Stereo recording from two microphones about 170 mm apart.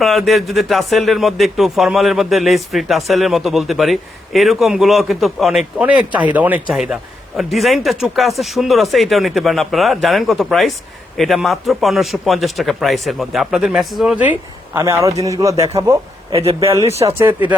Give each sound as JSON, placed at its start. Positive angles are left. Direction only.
{"t": 0.0, "sound": "speech", "side_deg": 0}
{"t": 16.3, "sound": "a man's voice", "side_deg": -35}
{"t": 16.6, "sound": "speech", "side_deg": -15}
{"t": 16.9, "sound": "a man's voice", "side_deg": -35}